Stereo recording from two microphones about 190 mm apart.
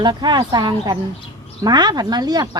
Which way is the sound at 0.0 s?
25° right (ahead or behind).